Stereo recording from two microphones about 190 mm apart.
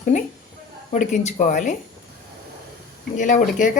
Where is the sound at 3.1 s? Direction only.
40° left (ahead or behind).